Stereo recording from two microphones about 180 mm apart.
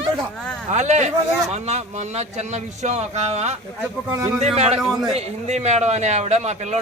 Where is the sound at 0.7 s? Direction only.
40° right (ahead or behind).